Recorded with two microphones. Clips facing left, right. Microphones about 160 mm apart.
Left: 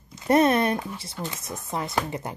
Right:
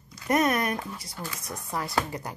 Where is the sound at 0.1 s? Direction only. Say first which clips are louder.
Left 5 dB; 25° left (ahead or behind).